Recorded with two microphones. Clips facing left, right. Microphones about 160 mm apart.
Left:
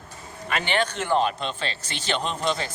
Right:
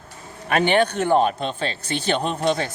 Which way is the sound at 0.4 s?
55° right (ahead or behind).